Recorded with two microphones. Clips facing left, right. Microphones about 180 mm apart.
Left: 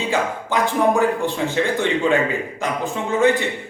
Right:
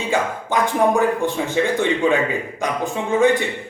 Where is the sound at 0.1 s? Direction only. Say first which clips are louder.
Right 2 dB; 15° right (ahead or behind).